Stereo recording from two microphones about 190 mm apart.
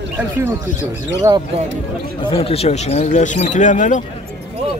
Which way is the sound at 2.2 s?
30° left (ahead or behind).